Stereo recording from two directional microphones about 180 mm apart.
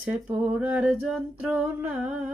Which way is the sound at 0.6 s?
10° right (ahead or behind).